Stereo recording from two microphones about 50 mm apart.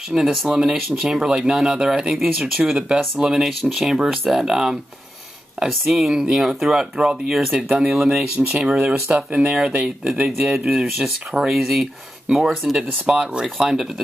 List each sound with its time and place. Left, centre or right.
0.1 s speech: centre
5.9 s speech: centre
8.4 s speech: right
10.0 s speech: centre
13.0 s speech: centre